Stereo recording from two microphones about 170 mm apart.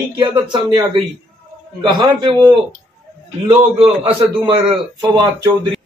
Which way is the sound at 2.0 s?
20° right (ahead or behind).